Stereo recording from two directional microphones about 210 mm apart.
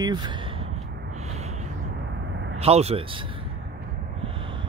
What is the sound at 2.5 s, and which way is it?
Speech, 30° right (ahead or behind).